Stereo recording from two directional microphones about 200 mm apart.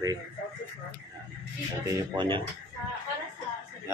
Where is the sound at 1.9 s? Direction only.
25° right (ahead or behind).